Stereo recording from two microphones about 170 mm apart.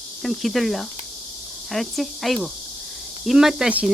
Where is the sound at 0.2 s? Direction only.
Centre (ahead or behind).